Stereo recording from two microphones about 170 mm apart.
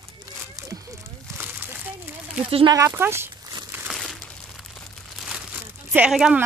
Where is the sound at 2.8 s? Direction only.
15° right (ahead or behind).